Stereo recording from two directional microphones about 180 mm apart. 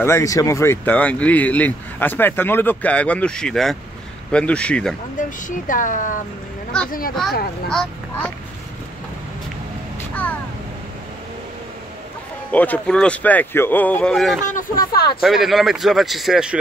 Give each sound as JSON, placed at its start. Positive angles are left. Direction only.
{"t": 0.0, "sound": "a man's voice", "side_deg": 15}
{"t": 5.7, "sound": "speech", "side_deg": 45}
{"t": 7.7, "sound": "speech", "side_deg": 5}
{"t": 12.4, "sound": "speech", "side_deg": 10}
{"t": 14.4, "sound": "speech", "side_deg": 50}
{"t": 15.2, "sound": "a man's voice", "side_deg": 0}